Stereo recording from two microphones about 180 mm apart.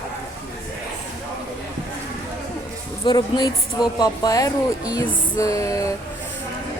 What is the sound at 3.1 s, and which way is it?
Speech, 25° left (ahead or behind).